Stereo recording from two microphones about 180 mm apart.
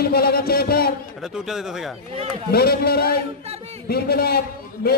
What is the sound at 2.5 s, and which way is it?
Music, 60° left (ahead or behind).